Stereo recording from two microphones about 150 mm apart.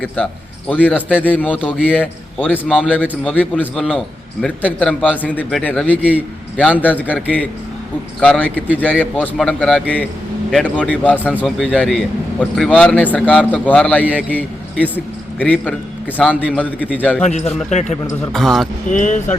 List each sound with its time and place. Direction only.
0.7 s a man's voice: 10° left (ahead or behind)
6.0 s a man's voice: 10° right (ahead or behind)
6.6 s a man's voice: 10° left (ahead or behind)
8.2 s a man's voice: 10° left (ahead or behind)
8.5 s a man's voice: 10° right (ahead or behind)
8.8 s a man's voice: 10° left (ahead or behind)
14.0 s a man's voice: 10° right (ahead or behind)
14.3 s a man's voice: 10° left (ahead or behind)
17.2 s speech: 50° left (ahead or behind)
18.3 s speech: centre (ahead or behind)
18.9 s speech: 55° left (ahead or behind)